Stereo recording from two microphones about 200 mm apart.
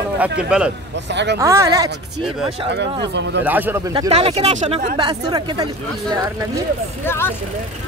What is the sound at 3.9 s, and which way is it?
Speech, 25° right (ahead or behind).